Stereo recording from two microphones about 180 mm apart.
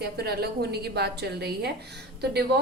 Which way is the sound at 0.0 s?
60° right (ahead or behind).